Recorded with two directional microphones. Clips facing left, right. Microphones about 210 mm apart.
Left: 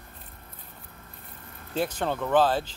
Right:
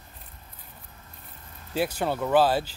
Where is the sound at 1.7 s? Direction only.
10° right (ahead or behind).